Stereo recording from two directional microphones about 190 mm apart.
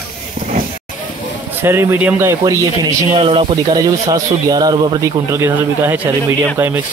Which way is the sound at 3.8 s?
20° right (ahead or behind).